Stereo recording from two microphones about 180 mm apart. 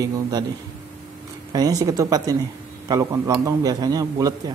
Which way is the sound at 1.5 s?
20° right (ahead or behind).